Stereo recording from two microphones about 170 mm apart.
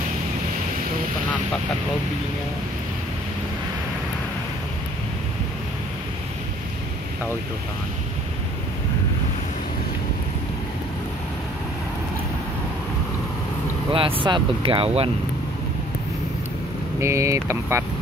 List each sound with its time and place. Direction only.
13.9 s speech: 30° right (ahead or behind)
17.0 s speech: 15° right (ahead or behind)